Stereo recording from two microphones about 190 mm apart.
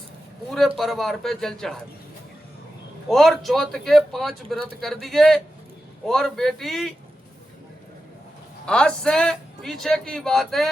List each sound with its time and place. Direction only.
0.8 s speech: centre (ahead or behind)
3.1 s speech: centre (ahead or behind)
8.6 s speech: 5° left (ahead or behind)